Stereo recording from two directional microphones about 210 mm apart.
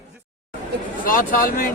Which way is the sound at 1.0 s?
40° left (ahead or behind).